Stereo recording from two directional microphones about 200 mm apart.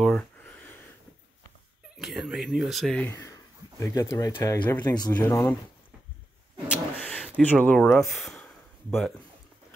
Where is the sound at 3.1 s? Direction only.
15° left (ahead or behind).